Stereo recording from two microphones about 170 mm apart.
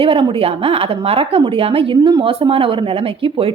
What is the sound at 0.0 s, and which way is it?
A woman's voice, 30° right (ahead or behind).